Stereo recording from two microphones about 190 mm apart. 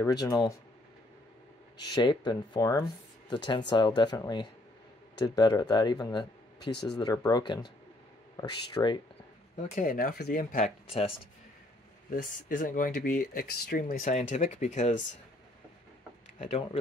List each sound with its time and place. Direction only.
0.0 s speech: 20° left (ahead or behind)
1.8 s speech: 20° left (ahead or behind)
9.8 s speech: 45° left (ahead or behind)
10.9 s speech: 30° left (ahead or behind)
12.1 s speech: 45° left (ahead or behind)
16.3 s speech: 35° left (ahead or behind)